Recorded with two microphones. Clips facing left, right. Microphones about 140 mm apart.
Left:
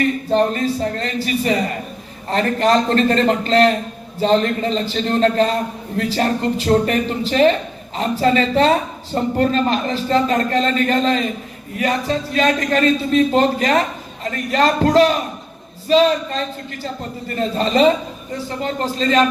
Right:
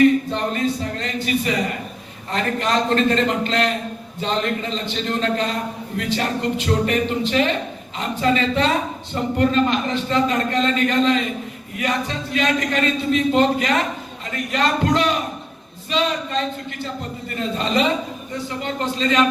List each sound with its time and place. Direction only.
0.3 s a man's voice: 35° left (ahead or behind)